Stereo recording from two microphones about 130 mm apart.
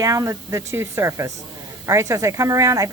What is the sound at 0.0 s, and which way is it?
Speech, 25° right (ahead or behind).